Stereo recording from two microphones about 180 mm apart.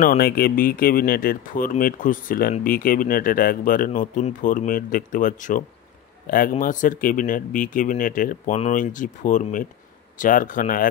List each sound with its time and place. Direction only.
0.0 s a man's voice: 50° left (ahead or behind)